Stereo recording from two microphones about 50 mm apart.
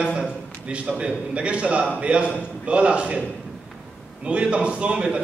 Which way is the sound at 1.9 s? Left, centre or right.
Right.